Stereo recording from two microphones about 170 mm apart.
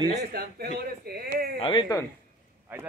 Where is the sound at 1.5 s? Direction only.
30° left (ahead or behind).